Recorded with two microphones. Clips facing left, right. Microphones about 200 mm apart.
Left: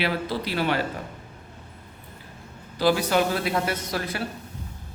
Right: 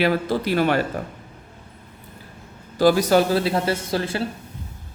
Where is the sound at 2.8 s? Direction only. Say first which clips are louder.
Right 5 dB; 45° right (ahead or behind).